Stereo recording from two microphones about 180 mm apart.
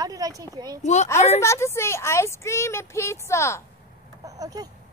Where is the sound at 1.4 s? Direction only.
15° left (ahead or behind).